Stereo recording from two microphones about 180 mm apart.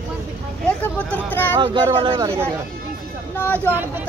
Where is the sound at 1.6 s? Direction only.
30° right (ahead or behind).